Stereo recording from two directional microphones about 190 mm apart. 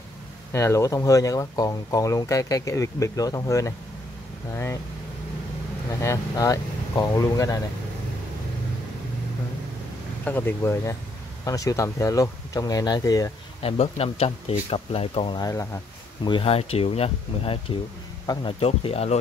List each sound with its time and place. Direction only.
0.5 s speech: 15° left (ahead or behind)
5.9 s speech: 15° left (ahead or behind)
10.2 s speech: 10° left (ahead or behind)
13.6 s speech: 30° left (ahead or behind)
16.3 s speech: 30° left (ahead or behind)